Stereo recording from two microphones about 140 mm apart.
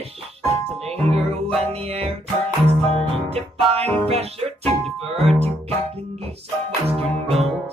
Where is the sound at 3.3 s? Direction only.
45° right (ahead or behind).